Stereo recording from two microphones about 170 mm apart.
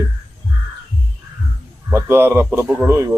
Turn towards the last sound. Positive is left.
turn(degrees=-15)  # may be behind; listen again after turning